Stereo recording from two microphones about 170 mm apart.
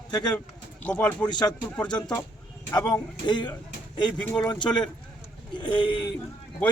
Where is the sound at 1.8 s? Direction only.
5° left (ahead or behind).